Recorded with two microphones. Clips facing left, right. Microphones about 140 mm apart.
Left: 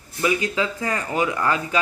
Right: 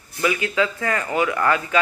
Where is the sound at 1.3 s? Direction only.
20° left (ahead or behind).